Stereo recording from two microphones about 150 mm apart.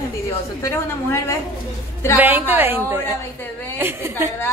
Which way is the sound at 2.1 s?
10° right (ahead or behind).